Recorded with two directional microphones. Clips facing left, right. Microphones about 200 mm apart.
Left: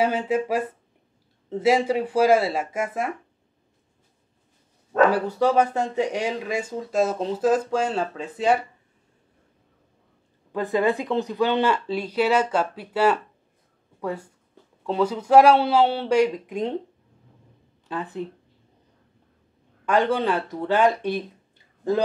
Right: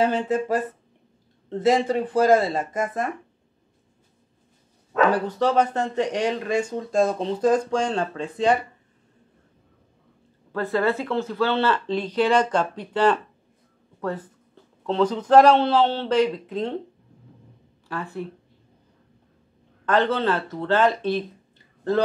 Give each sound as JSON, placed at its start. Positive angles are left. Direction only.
{"t": 0.0, "sound": "speech", "side_deg": 10}
{"t": 5.1, "sound": "speech", "side_deg": 10}
{"t": 10.5, "sound": "speech", "side_deg": 15}
{"t": 17.8, "sound": "speech", "side_deg": 20}
{"t": 19.9, "sound": "speech", "side_deg": 10}